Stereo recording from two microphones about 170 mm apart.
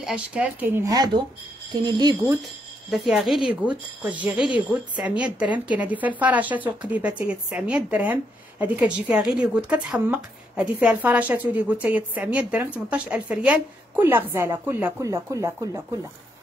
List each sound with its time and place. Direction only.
0.0 s speech: 5° right (ahead or behind); by 2.3 s 25° right (ahead or behind)
2.9 s speech: centre (ahead or behind); by 15.8 s 20° right (ahead or behind)